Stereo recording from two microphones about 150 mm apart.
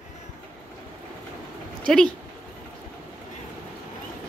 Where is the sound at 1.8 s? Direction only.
5° left (ahead or behind).